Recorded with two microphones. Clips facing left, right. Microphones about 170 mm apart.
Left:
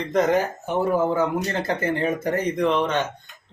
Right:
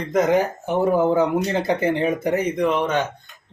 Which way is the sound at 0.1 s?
10° right (ahead or behind).